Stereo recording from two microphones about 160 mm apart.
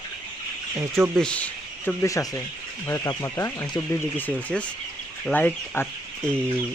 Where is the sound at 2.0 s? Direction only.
20° left (ahead or behind).